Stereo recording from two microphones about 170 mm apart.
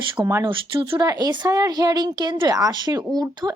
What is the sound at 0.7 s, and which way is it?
A woman's voice, 25° right (ahead or behind).